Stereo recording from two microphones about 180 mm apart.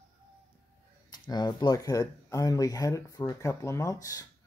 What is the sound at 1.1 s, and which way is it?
Speech, 25° left (ahead or behind).